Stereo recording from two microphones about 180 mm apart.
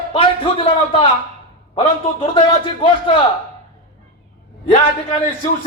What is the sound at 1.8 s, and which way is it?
A man's voice, 30° left (ahead or behind).